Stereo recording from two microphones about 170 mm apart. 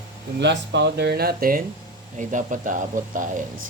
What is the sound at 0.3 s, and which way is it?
Speech, 90° right.